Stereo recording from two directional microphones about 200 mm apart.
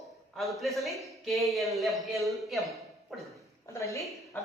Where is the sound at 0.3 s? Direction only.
Centre (ahead or behind).